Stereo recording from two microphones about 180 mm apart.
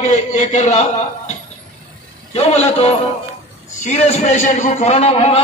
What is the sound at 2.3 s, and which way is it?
A man's voice, 35° left (ahead or behind).